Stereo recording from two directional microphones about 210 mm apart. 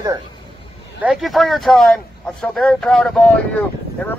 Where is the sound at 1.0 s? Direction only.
Centre (ahead or behind).